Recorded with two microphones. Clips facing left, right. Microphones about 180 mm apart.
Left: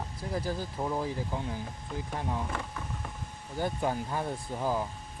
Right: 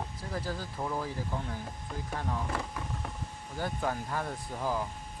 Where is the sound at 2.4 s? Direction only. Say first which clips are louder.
Right 1 dB; 5° right (ahead or behind).